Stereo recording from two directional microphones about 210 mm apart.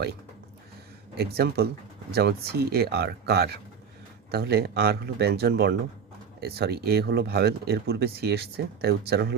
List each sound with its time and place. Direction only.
1.1 s speech: 50° right (ahead or behind)